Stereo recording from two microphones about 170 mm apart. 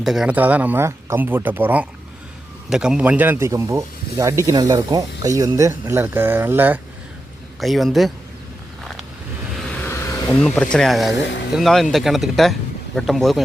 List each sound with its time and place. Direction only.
0.0 s speech: centre (ahead or behind)
7.6 s speech: centre (ahead or behind)
8.8 s vehicle: centre (ahead or behind)
9.8 s vehicle: 15° left (ahead or behind)
10.5 s speech: 5° left (ahead or behind)
11.2 s speech: 90° left
11.5 s speech: centre (ahead or behind)